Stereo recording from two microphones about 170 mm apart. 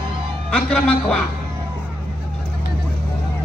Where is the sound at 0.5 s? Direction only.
5° left (ahead or behind).